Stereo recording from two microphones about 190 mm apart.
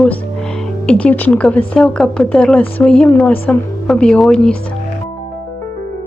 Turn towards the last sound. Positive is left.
turn(degrees=5)  # may be behind; listen again after turning